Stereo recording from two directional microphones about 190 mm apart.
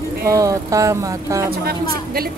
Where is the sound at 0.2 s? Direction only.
15° right (ahead or behind).